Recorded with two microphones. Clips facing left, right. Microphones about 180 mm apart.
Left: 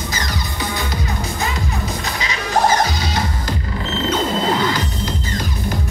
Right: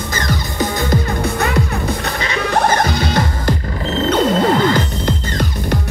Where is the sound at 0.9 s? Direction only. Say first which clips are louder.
Right 7 dB; 60° right (ahead or behind).